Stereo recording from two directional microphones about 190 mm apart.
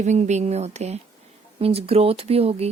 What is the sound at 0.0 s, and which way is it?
Speech, 40° right (ahead or behind).